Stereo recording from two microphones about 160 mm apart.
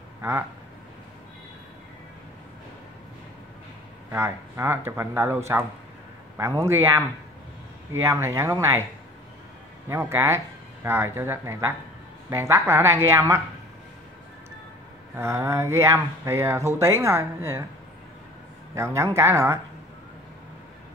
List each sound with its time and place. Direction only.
0.2 s speech: 15° right (ahead or behind)
4.1 s speech: 15° right (ahead or behind)
9.8 s speech: 15° right (ahead or behind)
15.1 s speech: 20° right (ahead or behind)
18.8 s speech: 20° right (ahead or behind)